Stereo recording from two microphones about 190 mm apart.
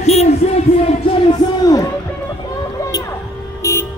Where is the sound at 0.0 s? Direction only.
35° left (ahead or behind).